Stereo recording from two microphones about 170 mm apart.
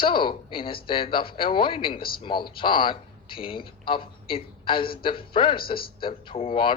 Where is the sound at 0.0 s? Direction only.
30° left (ahead or behind).